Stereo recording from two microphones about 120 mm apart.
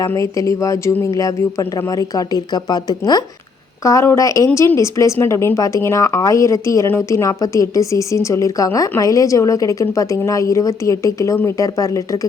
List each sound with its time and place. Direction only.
0.0 s a woman's voice: 25° left (ahead or behind)